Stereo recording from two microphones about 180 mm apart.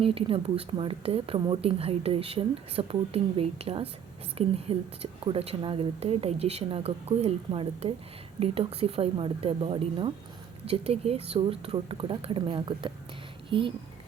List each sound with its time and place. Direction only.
0.0 s speech: 30° right (ahead or behind)